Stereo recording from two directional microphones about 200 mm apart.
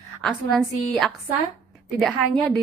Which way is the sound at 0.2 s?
Centre (ahead or behind).